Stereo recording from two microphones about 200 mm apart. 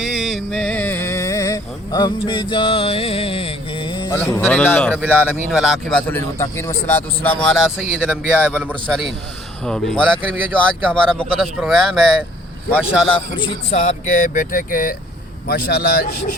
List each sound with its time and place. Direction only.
0.0 s a sound: centre (ahead or behind); by 4.1 s 25° left (ahead or behind)
4.2 s a man's voice: 10° left (ahead or behind)
12.9 s speech: centre (ahead or behind)
13.3 s a man's voice: 25° left (ahead or behind)
13.7 s speech: 35° left (ahead or behind)